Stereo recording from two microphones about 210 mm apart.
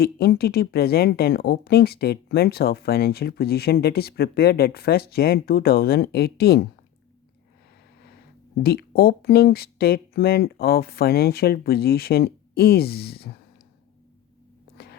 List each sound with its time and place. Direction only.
0.0 s speech: 50° left (ahead or behind)
8.6 s speech: 50° left (ahead or behind)